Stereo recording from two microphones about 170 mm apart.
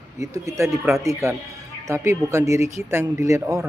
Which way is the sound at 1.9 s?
15° right (ahead or behind).